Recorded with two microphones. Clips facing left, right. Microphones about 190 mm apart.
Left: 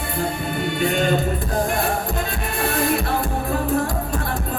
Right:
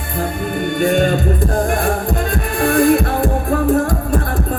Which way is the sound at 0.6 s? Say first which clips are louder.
Right 6 dB; 50° right (ahead or behind).